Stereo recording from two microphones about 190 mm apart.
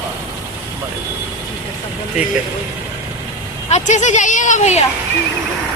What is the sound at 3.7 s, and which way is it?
Speech, 40° left (ahead or behind).